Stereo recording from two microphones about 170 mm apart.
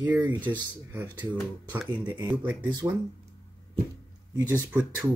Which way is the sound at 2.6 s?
25° right (ahead or behind).